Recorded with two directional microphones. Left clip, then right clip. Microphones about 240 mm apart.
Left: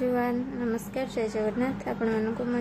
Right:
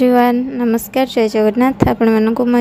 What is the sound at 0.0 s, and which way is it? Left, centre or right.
A woman's voice, right.